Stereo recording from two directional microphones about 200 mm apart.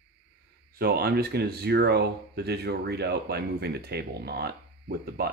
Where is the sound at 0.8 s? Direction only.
50° right (ahead or behind).